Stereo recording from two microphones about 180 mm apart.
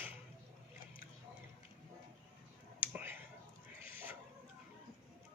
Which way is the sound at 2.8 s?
10° right (ahead or behind).